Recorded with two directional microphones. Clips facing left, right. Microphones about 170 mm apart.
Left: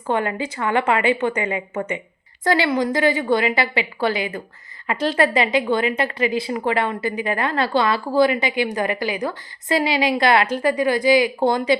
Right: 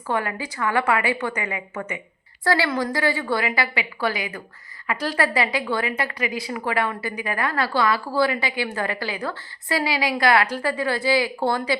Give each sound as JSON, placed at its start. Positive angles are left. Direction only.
{"t": 0.1, "sound": "a woman's voice", "side_deg": 25}